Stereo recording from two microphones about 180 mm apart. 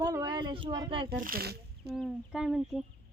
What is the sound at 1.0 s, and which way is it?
Speech, 55° right (ahead or behind).